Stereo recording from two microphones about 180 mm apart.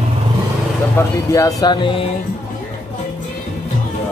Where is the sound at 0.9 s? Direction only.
20° left (ahead or behind).